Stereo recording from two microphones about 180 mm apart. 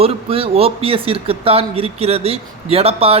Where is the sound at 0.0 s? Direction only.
30° right (ahead or behind).